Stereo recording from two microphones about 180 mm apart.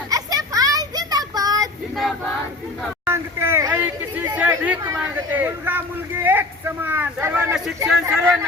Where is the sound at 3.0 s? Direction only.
15° right (ahead or behind).